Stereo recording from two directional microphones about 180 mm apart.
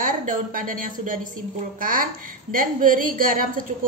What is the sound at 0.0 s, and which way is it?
A woman's voice, 50° right (ahead or behind).